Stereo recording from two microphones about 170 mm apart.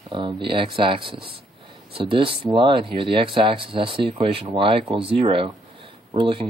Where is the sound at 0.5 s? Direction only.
30° right (ahead or behind).